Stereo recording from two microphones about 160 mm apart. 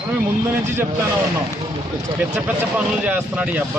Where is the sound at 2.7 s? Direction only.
10° right (ahead or behind).